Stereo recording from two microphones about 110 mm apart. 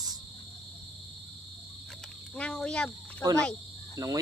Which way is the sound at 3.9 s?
35° right (ahead or behind).